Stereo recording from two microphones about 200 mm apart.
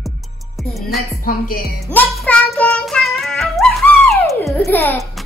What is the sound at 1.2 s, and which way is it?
Music, 45° left (ahead or behind).